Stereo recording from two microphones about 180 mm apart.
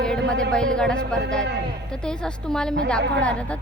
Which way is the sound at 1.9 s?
5° left (ahead or behind).